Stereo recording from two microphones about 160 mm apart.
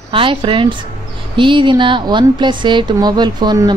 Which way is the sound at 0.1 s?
30° right (ahead or behind).